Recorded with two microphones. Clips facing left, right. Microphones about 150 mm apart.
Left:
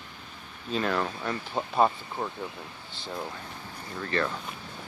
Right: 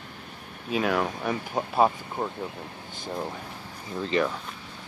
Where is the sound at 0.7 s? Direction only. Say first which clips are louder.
Right 3 dB; 10° right (ahead or behind).